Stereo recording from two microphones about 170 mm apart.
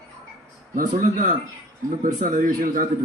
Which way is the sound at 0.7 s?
55° right (ahead or behind).